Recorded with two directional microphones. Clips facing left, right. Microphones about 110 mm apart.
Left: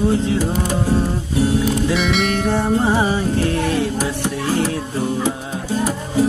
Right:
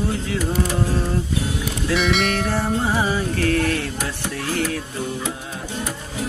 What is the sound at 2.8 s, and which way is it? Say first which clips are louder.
Music: left 4 dB; 25° left (ahead or behind).